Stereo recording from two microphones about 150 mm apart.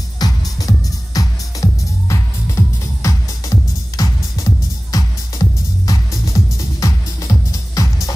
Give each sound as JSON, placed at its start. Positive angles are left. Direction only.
{"t": 0.2, "sound": "music", "side_deg": 25}